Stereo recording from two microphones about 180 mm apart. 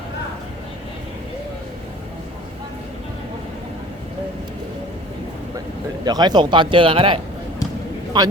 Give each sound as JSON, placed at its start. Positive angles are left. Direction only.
{"t": 6.1, "sound": "speech", "side_deg": -25}